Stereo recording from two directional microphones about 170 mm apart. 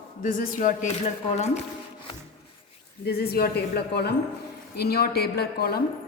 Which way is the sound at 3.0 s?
70° left (ahead or behind).